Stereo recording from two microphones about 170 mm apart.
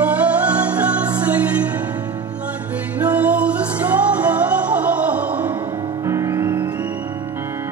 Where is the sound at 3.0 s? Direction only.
10° right (ahead or behind).